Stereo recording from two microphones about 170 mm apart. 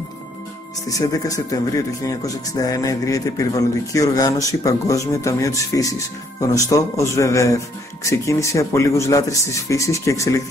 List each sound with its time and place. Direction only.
0.8 s speech: 20° left (ahead or behind)